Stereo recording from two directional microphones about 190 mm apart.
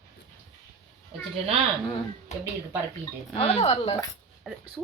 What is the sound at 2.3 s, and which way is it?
A woman's voice, 35° left (ahead or behind).